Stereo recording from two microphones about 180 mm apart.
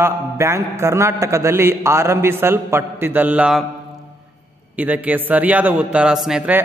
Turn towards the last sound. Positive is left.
turn(degrees=-5)  # may be behind; listen again after turning